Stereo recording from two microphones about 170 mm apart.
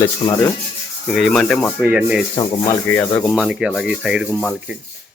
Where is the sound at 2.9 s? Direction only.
10° left (ahead or behind).